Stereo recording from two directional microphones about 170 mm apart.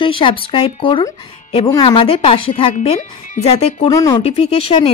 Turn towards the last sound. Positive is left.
turn(degrees=35)  # may be behind; listen again after turning